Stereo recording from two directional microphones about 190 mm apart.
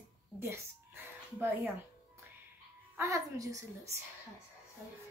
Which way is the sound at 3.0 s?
15° right (ahead or behind).